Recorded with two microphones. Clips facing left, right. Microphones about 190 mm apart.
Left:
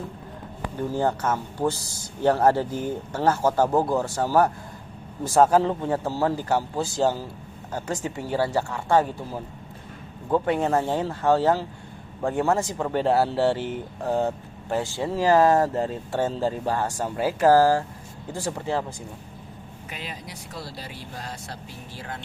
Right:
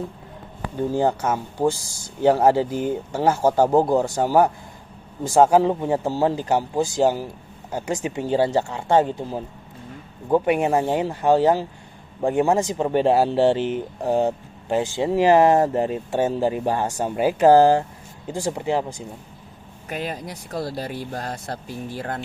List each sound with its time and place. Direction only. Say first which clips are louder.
0.9 s speech: right 3 dB; 15° right (ahead or behind)
19.9 s speech: right 9 dB; 50° right (ahead or behind)